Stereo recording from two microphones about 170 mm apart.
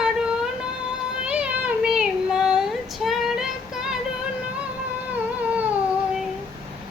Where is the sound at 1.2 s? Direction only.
5° right (ahead or behind).